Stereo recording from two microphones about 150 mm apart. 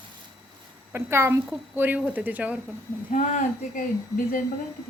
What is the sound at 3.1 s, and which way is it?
Speech, 60° left (ahead or behind).